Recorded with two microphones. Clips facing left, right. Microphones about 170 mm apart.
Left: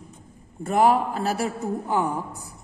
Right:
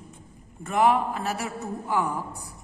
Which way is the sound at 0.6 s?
35° left (ahead or behind).